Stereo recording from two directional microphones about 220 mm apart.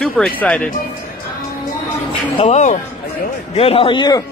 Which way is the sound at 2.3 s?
30° left (ahead or behind).